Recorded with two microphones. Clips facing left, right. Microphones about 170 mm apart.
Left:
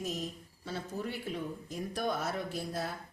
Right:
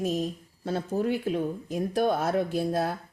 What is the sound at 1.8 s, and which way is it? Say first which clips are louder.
Speech: right 9 dB; 55° right (ahead or behind).